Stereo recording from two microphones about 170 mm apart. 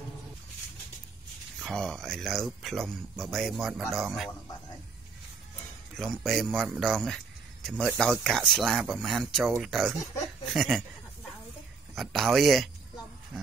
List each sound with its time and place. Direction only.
1.6 s speech: centre (ahead or behind)
5.9 s speech: centre (ahead or behind)
11.9 s speech: centre (ahead or behind)